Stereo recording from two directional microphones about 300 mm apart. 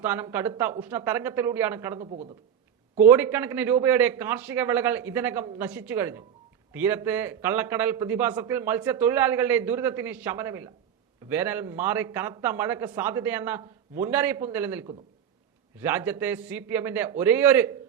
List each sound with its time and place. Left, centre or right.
0.0 s a man's voice: centre
2.0 s a man's voice: right
3.1 s a man's voice: centre